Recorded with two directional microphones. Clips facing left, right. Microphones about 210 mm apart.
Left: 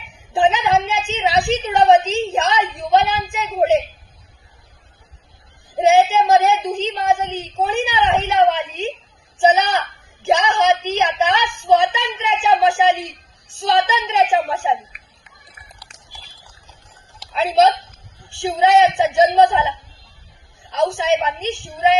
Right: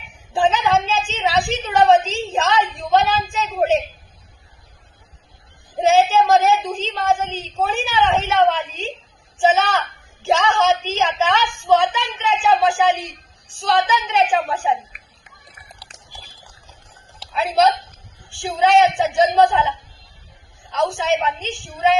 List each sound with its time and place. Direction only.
0.3 s a woman's voice: 20° left (ahead or behind)
5.7 s a woman's voice: 20° left (ahead or behind)
14.9 s a sound: 45° right (ahead or behind)
17.3 s a woman's voice: 25° left (ahead or behind)